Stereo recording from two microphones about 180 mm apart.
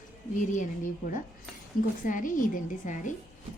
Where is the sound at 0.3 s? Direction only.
45° left (ahead or behind).